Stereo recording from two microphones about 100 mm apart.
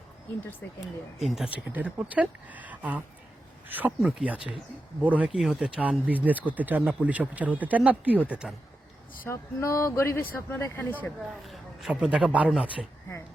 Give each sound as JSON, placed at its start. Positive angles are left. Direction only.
{"t": 0.6, "sound": "speech", "side_deg": 20}
{"t": 1.2, "sound": "speech", "side_deg": 0}
{"t": 1.6, "sound": "speech", "side_deg": -15}
{"t": 9.2, "sound": "speech", "side_deg": 30}
{"t": 11.4, "sound": "speech", "side_deg": 0}